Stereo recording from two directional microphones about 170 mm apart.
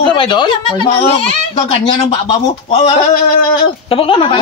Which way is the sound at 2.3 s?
35° left (ahead or behind).